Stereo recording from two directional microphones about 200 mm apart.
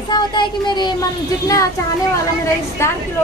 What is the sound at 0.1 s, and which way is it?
Speech, 20° left (ahead or behind).